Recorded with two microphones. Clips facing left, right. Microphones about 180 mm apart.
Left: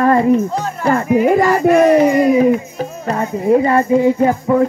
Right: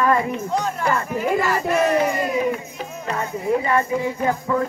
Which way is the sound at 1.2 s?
55° left (ahead or behind).